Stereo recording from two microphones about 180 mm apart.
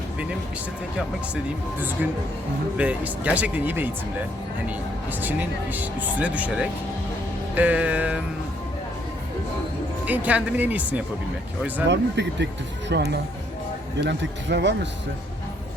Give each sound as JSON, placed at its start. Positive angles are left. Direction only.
{"t": 2.7, "sound": "speech", "side_deg": -5}
{"t": 5.2, "sound": "speech", "side_deg": -10}
{"t": 10.1, "sound": "speech", "side_deg": -10}
{"t": 11.9, "sound": "speech", "side_deg": -75}